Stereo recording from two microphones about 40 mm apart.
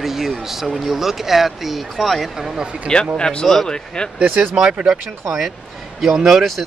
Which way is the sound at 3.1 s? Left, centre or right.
Left.